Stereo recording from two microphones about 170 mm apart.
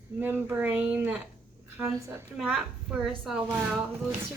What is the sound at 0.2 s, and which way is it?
A woman's voice, 10° right (ahead or behind).